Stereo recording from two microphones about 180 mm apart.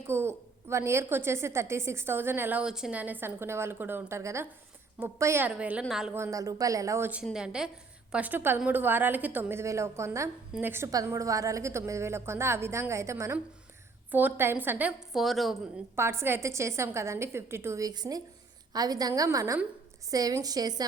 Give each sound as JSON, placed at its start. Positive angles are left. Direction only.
{"t": 0.1, "sound": "a woman's voice", "side_deg": -15}
{"t": 6.1, "sound": "a woman's voice", "side_deg": -15}
{"t": 16.0, "sound": "a woman's voice", "side_deg": -15}